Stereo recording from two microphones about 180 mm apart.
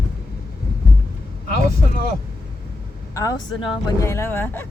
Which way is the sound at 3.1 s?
20° left (ahead or behind).